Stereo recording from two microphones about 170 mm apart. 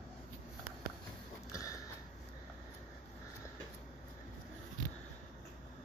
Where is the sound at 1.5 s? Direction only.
20° left (ahead or behind).